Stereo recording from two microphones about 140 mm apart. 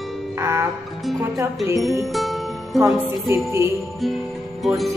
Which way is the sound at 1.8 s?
Centre (ahead or behind).